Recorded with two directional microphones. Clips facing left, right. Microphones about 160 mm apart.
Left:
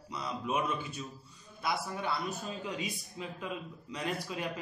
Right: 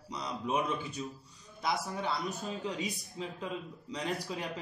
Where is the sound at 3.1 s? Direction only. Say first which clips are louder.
Right 1 dB; 20° right (ahead or behind).